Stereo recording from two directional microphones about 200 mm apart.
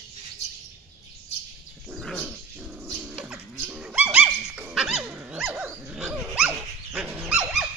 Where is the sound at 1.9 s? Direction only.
Centre (ahead or behind).